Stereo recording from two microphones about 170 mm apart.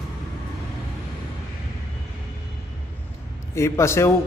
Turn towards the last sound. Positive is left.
turn(degrees=15)  # may be behind; listen again after turning